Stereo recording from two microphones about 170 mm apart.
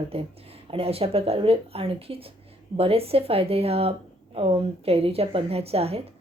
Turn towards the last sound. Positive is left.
turn(degrees=-35)  # may be behind; listen again after turning